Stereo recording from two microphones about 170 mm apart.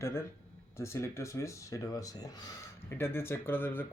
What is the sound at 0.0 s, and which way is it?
Speech, 15° left (ahead or behind).